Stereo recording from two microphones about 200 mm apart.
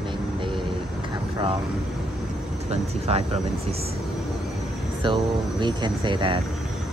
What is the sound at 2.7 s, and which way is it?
Speech, 30° right (ahead or behind).